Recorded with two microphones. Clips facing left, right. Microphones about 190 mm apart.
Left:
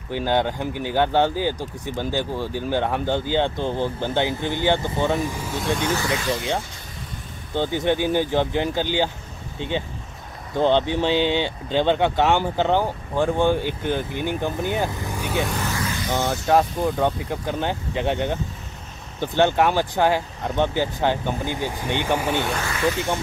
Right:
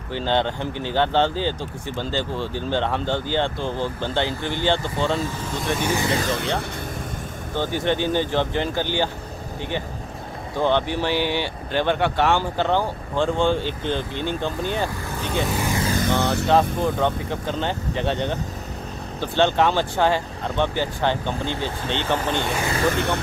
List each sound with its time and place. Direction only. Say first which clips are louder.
0.1 s speech: left 1 dB; 10° left (ahead or behind)
5.9 s speech: right 1 dB; 15° right (ahead or behind)
6.3 s speech: even; 65° right (ahead or behind)
7.5 s speech: left 1 dB; 15° left (ahead or behind)
15.4 s speech: right 2 dB; 5° right (ahead or behind)
16.2 s speech: right 2 dB; 65° right (ahead or behind)
16.4 s speech: left 1 dB; 10° left (ahead or behind)
22.8 s speech: left 1 dB; 60° right (ahead or behind)